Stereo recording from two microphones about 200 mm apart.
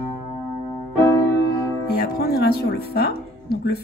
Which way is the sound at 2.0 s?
50° left (ahead or behind).